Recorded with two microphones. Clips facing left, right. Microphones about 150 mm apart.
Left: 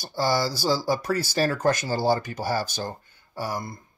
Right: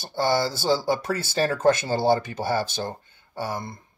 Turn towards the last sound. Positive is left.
turn(degrees=-25)  # may be behind; listen again after turning